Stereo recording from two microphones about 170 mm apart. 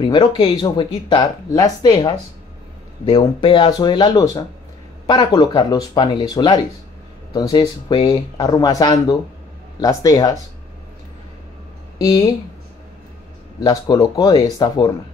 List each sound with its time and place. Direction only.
0.4 s speech: 25° left (ahead or behind)
12.0 s speech: 20° left (ahead or behind)
13.6 s speech: 20° left (ahead or behind)